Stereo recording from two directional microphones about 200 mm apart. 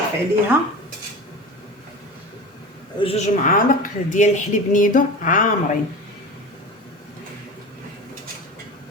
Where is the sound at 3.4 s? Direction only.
40° left (ahead or behind).